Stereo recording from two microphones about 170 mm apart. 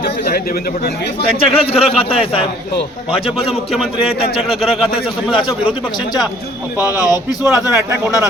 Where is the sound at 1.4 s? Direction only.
35° left (ahead or behind).